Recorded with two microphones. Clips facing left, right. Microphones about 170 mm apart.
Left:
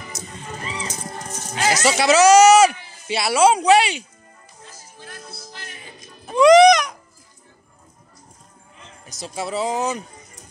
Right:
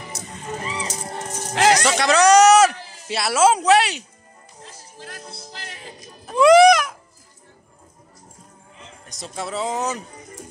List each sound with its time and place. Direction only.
0.1 s music: 65° right (ahead or behind)
1.5 s music: 70° right (ahead or behind)
1.8 s speech: 5° left (ahead or behind)
5.6 s music: 35° right (ahead or behind)
6.2 s a sound: 5° right (ahead or behind)
9.0 s speech: 5° left (ahead or behind)